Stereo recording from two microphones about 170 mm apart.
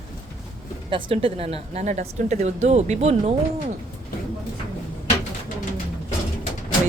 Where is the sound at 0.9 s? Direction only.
30° right (ahead or behind).